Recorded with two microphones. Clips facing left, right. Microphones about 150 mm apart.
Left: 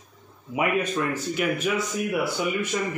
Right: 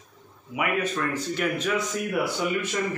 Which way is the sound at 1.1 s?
10° left (ahead or behind).